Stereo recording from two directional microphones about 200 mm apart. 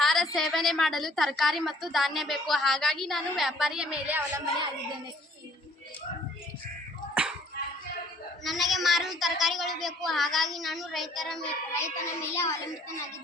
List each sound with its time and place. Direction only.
0.0 s a woman's voice: centre (ahead or behind)
7.1 s music: 5° right (ahead or behind)
8.4 s a woman's voice: centre (ahead or behind)
12.0 s a child's voice: 15° left (ahead or behind)